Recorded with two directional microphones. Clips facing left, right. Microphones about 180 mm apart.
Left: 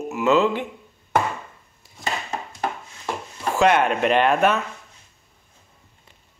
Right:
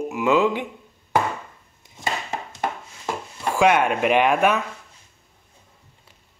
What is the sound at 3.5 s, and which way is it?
Speech, 10° right (ahead or behind).